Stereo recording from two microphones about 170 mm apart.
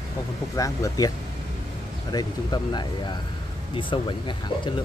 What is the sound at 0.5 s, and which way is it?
Speech, 20° left (ahead or behind).